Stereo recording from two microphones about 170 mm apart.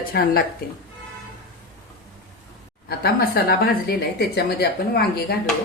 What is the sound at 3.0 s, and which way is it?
A woman's voice, 65° left (ahead or behind).